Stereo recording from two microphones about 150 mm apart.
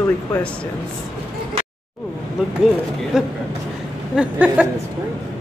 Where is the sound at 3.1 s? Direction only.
5° right (ahead or behind).